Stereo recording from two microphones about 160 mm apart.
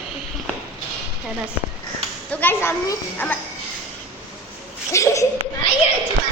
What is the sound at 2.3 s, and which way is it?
A child's voice, 10° left (ahead or behind).